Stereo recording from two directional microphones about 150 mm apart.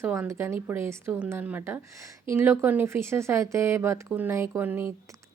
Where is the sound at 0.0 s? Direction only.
15° right (ahead or behind).